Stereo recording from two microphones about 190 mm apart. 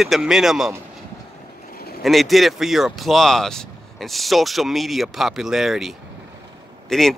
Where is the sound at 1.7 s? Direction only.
55° left (ahead or behind).